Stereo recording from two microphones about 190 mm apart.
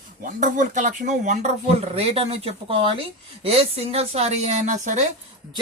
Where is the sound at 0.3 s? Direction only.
40° right (ahead or behind).